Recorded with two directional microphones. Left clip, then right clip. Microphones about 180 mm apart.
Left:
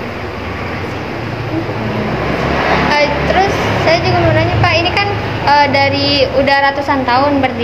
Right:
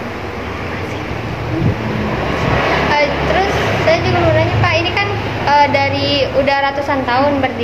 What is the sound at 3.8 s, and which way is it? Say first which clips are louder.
A woman's voice: left 2 dB; 15° left (ahead or behind).